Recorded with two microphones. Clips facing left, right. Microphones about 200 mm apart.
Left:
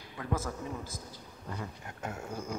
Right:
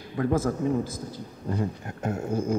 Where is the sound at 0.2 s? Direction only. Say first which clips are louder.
Right 11 dB; 50° right (ahead or behind).